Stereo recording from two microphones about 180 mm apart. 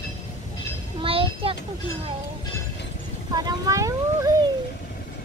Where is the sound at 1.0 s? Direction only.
30° right (ahead or behind).